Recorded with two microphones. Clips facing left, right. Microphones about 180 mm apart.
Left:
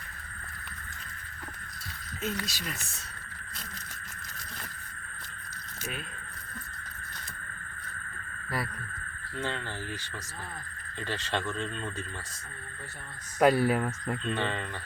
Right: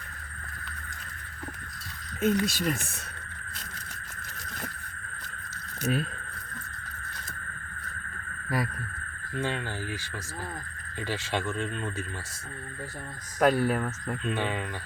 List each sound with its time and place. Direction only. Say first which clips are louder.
2.2 s speech: right 10 dB; 50° right (ahead or behind)
8.4 s speech: right 4 dB; 15° right (ahead or behind)
11.0 s speech: right 2 dB; 10° right (ahead or behind)
13.4 s speech: left 1 dB; 10° left (ahead or behind)
14.3 s speech: right 2 dB; 10° right (ahead or behind)